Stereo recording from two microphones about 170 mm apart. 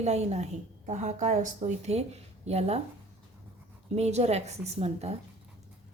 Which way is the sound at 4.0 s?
40° right (ahead or behind).